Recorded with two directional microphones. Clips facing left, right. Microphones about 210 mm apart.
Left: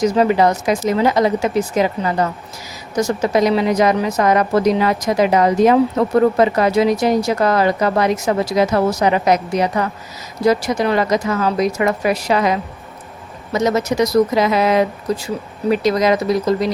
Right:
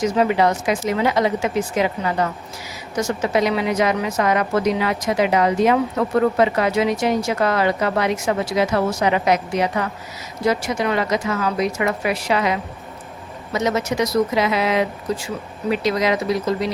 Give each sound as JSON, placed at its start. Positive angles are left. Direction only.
{"t": 0.0, "sound": "a woman's voice", "side_deg": 40}